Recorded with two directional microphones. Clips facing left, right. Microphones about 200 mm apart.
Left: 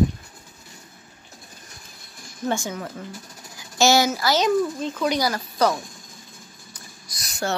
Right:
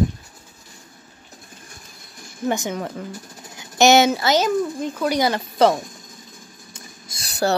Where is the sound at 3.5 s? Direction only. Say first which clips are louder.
Right 4 dB; 20° right (ahead or behind).